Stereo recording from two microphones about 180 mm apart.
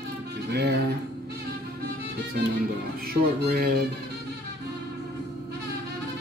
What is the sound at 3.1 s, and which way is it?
Speech, 60° right (ahead or behind).